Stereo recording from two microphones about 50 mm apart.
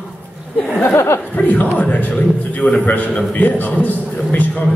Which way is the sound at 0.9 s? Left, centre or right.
Left.